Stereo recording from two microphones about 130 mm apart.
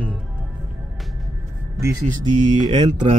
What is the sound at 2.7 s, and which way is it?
Mantra, 40° right (ahead or behind).